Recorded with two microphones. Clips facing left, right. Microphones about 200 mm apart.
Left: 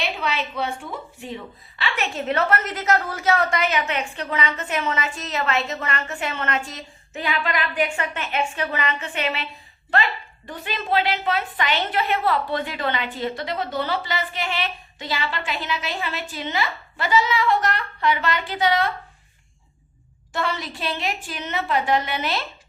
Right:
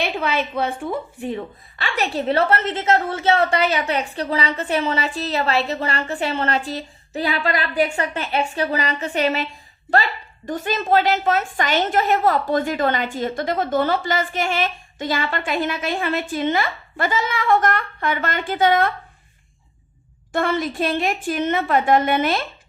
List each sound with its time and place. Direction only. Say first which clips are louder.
0.0 s a woman's voice: right 4 dB; 55° right (ahead or behind)
1.8 s a woman's voice: right 4 dB; 35° right (ahead or behind)
20.3 s a woman's voice: right 6 dB; 50° right (ahead or behind)